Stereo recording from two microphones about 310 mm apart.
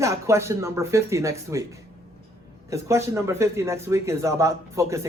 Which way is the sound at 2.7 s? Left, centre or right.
Centre.